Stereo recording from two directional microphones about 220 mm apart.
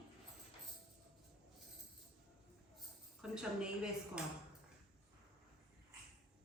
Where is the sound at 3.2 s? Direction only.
5° right (ahead or behind).